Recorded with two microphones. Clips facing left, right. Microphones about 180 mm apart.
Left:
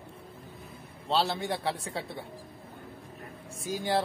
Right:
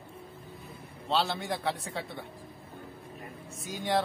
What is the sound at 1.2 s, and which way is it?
A man's voice, 30° left (ahead or behind).